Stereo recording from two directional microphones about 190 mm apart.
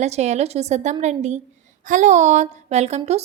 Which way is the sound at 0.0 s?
35° right (ahead or behind).